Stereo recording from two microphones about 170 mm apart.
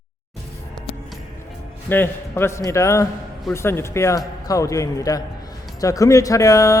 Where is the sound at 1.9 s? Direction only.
15° left (ahead or behind).